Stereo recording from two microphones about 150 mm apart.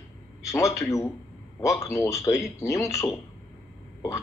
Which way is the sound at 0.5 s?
20° left (ahead or behind).